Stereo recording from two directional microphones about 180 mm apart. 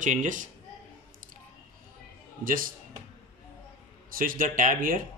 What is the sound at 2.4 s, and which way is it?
Speech, 50° right (ahead or behind).